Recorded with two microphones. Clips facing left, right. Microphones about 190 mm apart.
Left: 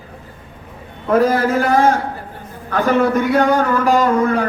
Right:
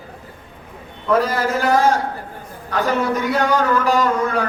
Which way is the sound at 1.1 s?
50° left (ahead or behind).